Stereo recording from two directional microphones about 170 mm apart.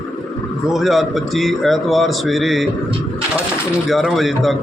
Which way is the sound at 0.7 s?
Centre (ahead or behind).